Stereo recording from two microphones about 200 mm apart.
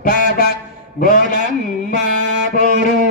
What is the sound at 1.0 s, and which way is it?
Speech, 40° left (ahead or behind).